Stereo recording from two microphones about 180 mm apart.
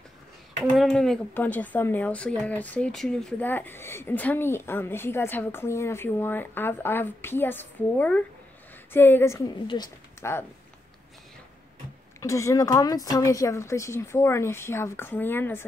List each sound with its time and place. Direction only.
0.7 s speech: centre (ahead or behind); by 10.4 s 20° left (ahead or behind)
12.2 s speech: 15° left (ahead or behind)